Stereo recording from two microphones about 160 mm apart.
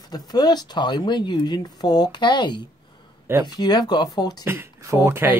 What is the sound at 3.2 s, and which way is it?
Speech, 15° right (ahead or behind).